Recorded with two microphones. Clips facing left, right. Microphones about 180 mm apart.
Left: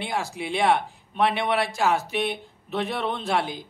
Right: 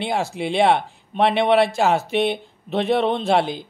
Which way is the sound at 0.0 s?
25° right (ahead or behind).